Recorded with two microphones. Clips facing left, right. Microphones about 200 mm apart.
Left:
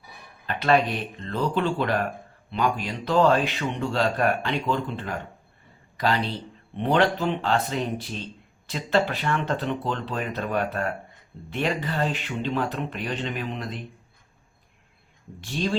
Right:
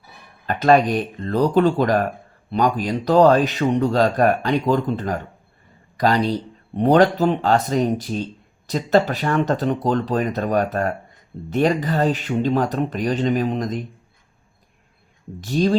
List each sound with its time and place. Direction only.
0.4 s speech: 45° right (ahead or behind)
15.4 s speech: 40° right (ahead or behind)